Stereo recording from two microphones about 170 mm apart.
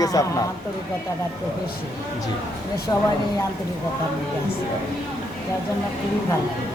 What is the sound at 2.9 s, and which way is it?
Speech, 20° left (ahead or behind).